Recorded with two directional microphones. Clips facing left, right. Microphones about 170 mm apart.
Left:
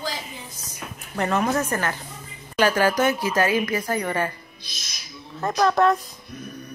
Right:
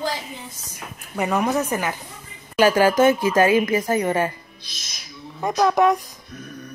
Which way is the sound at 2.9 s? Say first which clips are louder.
Right 5 dB; 50° right (ahead or behind).